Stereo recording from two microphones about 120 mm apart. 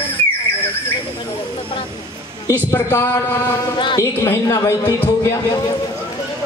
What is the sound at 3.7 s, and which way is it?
Speech, 40° left (ahead or behind).